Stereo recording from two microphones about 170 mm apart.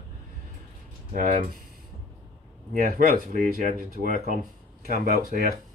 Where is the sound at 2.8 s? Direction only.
55° right (ahead or behind).